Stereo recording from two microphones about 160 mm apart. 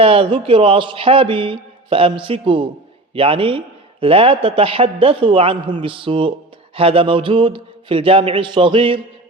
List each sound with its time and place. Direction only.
0.0 s speech: 35° right (ahead or behind)